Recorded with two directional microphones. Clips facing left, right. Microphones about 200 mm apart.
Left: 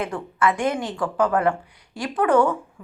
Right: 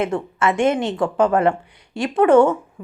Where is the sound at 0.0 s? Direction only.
25° right (ahead or behind).